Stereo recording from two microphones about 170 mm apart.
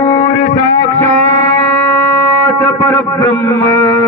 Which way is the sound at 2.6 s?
20° left (ahead or behind).